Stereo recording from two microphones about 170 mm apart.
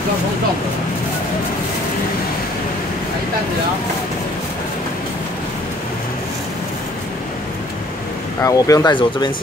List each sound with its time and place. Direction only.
8.4 s speech: 20° left (ahead or behind)